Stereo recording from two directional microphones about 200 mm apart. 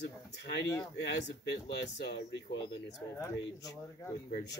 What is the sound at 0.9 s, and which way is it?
Speech, 60° left (ahead or behind).